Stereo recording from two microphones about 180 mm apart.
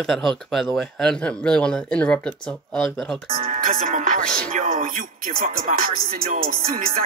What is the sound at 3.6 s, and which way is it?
Speech, 45° right (ahead or behind).